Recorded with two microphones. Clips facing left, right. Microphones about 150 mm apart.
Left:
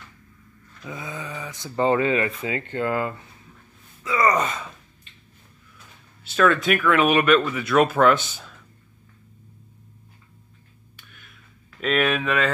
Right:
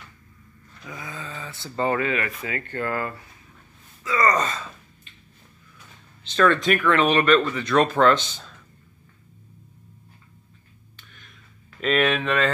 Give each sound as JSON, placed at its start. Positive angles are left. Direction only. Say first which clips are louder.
{"t": 0.8, "sound": "speech", "louder": "left 3 dB", "side_deg": 20}
{"t": 6.2, "sound": "speech", "louder": "even", "side_deg": 5}
{"t": 11.0, "sound": "a sound", "louder": "even", "side_deg": 10}
{"t": 11.8, "sound": "speech", "louder": "right 1 dB", "side_deg": 0}